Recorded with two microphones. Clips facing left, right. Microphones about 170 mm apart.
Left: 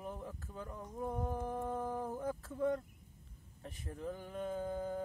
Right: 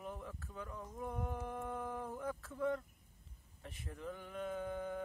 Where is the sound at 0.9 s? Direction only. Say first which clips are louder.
Left 4 dB; 30° left (ahead or behind).